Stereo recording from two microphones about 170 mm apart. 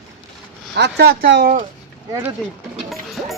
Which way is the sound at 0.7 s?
85° right.